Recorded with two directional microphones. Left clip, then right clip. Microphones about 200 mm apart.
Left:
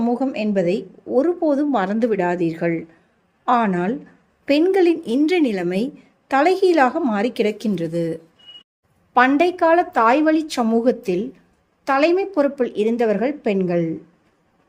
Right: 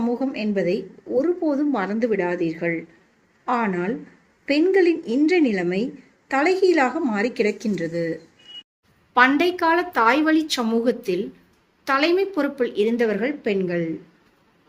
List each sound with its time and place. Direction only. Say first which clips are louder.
0.0 s speech: left 3 dB; 50° left (ahead or behind)